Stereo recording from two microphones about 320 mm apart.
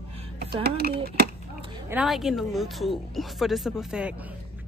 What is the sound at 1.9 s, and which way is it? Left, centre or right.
Speech, centre.